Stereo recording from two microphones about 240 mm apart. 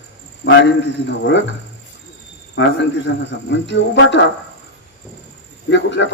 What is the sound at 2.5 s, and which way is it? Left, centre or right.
A man's voice, left.